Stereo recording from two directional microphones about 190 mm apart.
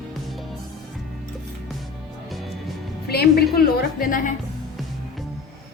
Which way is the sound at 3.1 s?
55° left (ahead or behind).